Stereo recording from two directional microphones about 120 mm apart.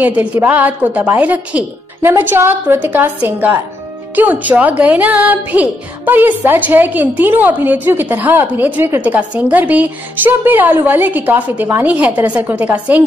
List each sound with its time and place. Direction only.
0.0 s speech: 15° right (ahead or behind)